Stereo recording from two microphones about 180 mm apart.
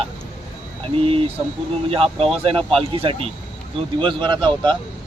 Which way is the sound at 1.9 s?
35° right (ahead or behind).